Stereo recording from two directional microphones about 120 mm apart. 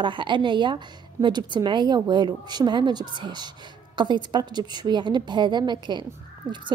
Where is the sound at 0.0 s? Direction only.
45° right (ahead or behind).